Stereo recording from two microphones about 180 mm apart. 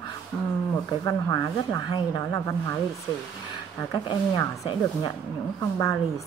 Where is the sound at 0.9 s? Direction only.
20° left (ahead or behind).